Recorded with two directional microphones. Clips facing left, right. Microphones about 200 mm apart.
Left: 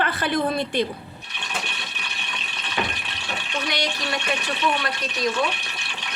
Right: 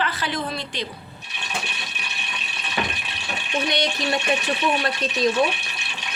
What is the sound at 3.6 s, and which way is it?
Speech, 25° right (ahead or behind).